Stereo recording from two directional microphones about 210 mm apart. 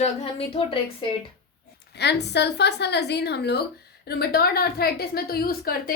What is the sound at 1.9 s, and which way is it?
A woman's voice, 55° left (ahead or behind).